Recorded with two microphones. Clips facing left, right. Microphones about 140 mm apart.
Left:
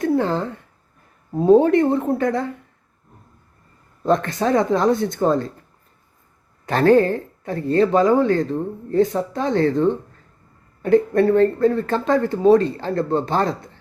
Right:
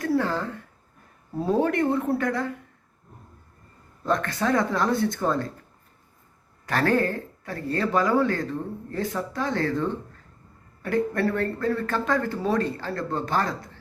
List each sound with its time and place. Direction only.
0.0 s a sound: 25° left (ahead or behind)
1.4 s speech: 20° left (ahead or behind)
4.0 s speech: 25° left (ahead or behind)
6.7 s speech: 25° left (ahead or behind)
10.8 s speech: 20° left (ahead or behind)